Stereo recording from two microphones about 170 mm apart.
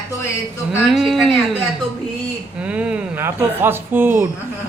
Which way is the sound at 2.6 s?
5° right (ahead or behind).